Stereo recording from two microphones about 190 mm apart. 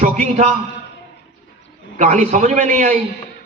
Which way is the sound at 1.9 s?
40° right (ahead or behind).